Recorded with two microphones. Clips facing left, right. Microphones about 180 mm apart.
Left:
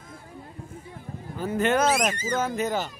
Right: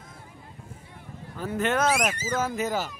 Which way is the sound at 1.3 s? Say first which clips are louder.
Left 3 dB; centre (ahead or behind).